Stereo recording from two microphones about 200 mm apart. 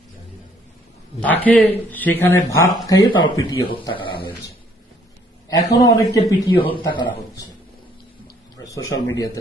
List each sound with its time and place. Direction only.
1.2 s a man's voice: 10° left (ahead or behind); by 4.2 s 25° left (ahead or behind)
5.5 s a man's voice: 15° left (ahead or behind)
8.6 s a man's voice: 15° left (ahead or behind)